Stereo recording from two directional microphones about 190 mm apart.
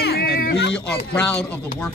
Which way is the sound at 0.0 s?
55° left (ahead or behind).